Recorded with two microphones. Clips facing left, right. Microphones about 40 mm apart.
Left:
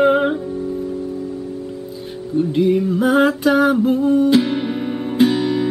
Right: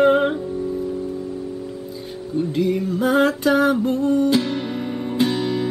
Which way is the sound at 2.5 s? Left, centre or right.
Centre.